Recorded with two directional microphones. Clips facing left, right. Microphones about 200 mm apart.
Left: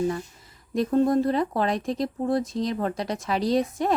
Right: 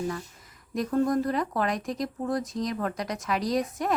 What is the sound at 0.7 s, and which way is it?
A woman's voice, 25° left (ahead or behind).